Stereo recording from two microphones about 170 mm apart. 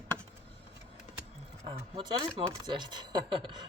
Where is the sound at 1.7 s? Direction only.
30° right (ahead or behind).